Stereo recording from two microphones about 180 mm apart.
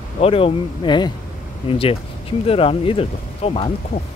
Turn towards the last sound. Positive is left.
turn(degrees=35)  # may be behind; listen again after turning